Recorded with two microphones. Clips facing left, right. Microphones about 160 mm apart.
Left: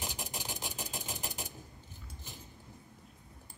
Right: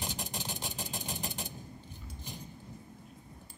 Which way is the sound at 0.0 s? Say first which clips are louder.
Right 2 dB; 5° left (ahead or behind).